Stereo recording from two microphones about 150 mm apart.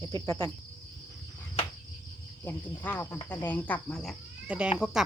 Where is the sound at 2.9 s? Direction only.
15° left (ahead or behind).